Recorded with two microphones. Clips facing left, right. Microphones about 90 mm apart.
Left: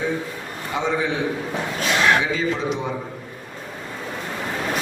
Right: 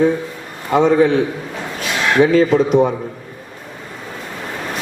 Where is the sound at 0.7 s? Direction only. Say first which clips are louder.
Right 11 dB; 55° right (ahead or behind).